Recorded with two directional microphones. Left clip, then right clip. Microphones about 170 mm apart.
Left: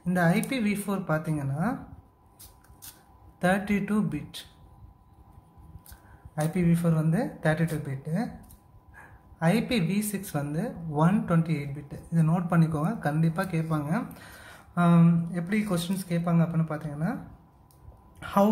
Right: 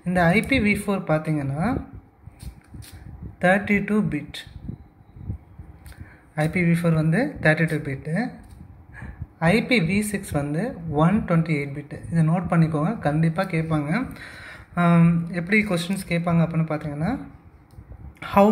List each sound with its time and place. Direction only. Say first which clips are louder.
0.0 s speech: right 6 dB; centre (ahead or behind)
3.3 s speech: right 7 dB; 10° left (ahead or behind)
6.4 s speech: right 5 dB; centre (ahead or behind)
9.4 s speech: right 7 dB; 5° left (ahead or behind)
18.2 s speech: right 7 dB; centre (ahead or behind)